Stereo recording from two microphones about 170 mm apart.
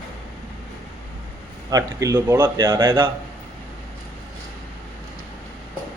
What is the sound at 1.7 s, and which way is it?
Speech, 20° right (ahead or behind).